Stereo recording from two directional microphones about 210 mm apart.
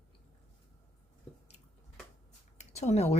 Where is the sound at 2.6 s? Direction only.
30° left (ahead or behind).